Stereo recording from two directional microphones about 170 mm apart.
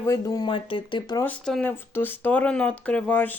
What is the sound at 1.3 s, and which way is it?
Speech, 5° left (ahead or behind).